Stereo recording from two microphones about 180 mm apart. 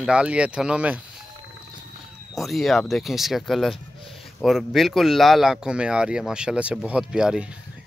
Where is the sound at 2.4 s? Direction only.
Centre (ahead or behind).